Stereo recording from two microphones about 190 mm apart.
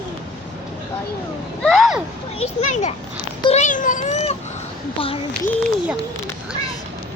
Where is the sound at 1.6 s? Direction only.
Centre (ahead or behind).